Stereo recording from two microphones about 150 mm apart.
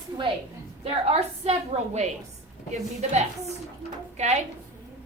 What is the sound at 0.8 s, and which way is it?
Speech, 45° right (ahead or behind).